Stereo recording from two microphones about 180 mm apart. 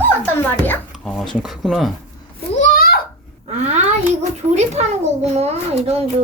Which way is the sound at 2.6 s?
55° left (ahead or behind).